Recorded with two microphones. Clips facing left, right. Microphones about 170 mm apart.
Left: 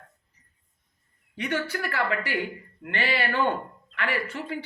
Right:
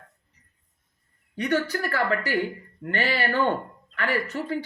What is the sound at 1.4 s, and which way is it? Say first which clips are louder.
Speech: right 4 dB; 40° right (ahead or behind).